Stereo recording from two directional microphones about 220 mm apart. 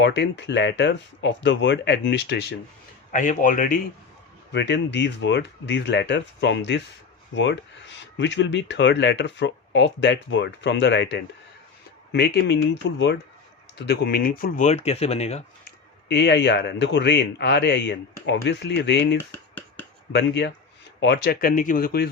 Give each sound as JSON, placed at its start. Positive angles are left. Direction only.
{"t": 0.0, "sound": "speech", "side_deg": 50}
{"t": 3.1, "sound": "speech", "side_deg": 35}
{"t": 4.5, "sound": "speech", "side_deg": 50}
{"t": 16.0, "sound": "speech", "side_deg": 50}
{"t": 19.1, "sound": "a sound", "side_deg": 10}
{"t": 20.1, "sound": "speech", "side_deg": 50}